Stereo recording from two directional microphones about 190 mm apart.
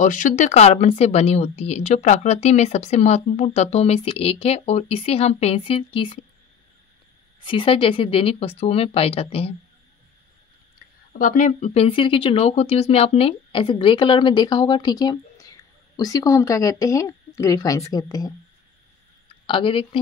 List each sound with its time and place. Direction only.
0.0 s speech: 45° left (ahead or behind); by 6.2 s 30° left (ahead or behind)
7.4 s speech: 25° left (ahead or behind)
11.1 s speech: 40° left (ahead or behind); by 18.3 s 20° left (ahead or behind)
19.4 s speech: 25° left (ahead or behind)